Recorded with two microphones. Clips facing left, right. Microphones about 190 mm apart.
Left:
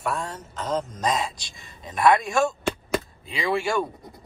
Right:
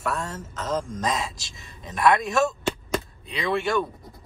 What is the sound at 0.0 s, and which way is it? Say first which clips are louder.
Speech: even; centre (ahead or behind).